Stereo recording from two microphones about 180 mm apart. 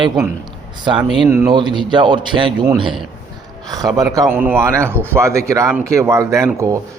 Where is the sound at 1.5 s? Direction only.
25° right (ahead or behind).